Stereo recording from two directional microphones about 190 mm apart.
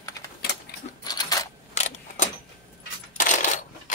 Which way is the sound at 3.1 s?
40° left (ahead or behind).